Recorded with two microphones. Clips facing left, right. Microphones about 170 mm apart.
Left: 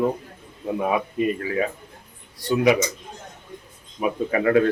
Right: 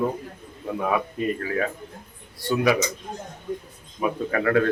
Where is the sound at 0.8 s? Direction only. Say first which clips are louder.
Left 2 dB; 20° left (ahead or behind).